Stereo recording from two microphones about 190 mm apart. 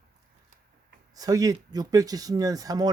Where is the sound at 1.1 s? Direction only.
20° right (ahead or behind).